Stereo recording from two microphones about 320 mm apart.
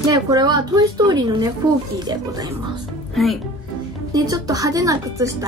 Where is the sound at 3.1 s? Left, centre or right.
Centre.